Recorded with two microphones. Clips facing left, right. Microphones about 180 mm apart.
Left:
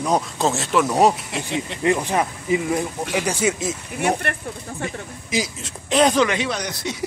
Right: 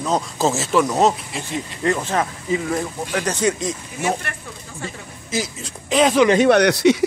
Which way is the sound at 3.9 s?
60° left (ahead or behind).